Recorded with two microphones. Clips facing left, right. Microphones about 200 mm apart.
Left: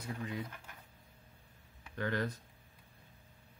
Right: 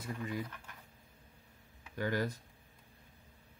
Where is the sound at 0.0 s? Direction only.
5° right (ahead or behind).